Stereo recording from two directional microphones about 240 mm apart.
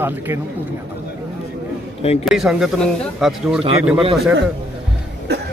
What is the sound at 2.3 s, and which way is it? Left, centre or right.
Speech, centre.